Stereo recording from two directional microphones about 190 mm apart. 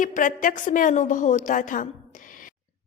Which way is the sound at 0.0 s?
45° left (ahead or behind).